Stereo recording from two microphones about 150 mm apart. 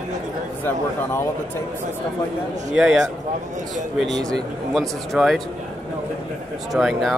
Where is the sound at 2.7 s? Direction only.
5° right (ahead or behind).